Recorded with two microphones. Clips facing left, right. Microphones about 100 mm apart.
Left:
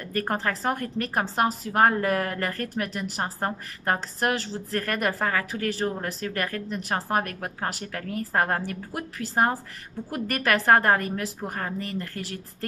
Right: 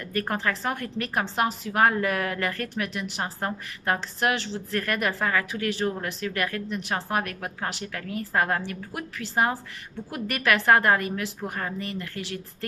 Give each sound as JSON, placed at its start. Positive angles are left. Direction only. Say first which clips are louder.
{"t": 0.1, "sound": "a woman's voice", "louder": "even", "side_deg": 40}